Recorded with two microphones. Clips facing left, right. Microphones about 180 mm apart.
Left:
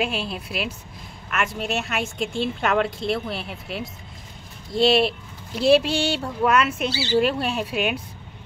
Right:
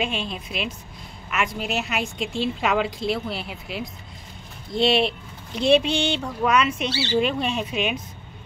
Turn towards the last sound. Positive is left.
turn(degrees=5)  # may be behind; listen again after turning